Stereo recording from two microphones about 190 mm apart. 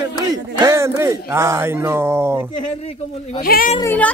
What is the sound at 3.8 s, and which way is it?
Speech, 10° left (ahead or behind).